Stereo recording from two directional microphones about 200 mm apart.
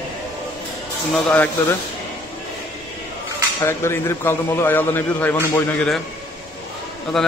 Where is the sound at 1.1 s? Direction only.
10° left (ahead or behind).